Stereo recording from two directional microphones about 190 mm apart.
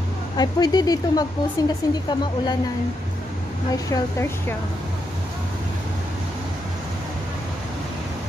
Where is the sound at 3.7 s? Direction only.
15° left (ahead or behind).